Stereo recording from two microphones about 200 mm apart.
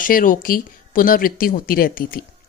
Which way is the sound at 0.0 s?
45° left (ahead or behind).